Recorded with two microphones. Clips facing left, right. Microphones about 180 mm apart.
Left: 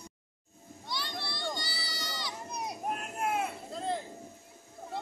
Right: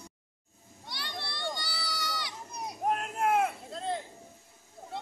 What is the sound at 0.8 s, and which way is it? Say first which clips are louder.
Children playing: left 2 dB; 65° right (ahead or behind).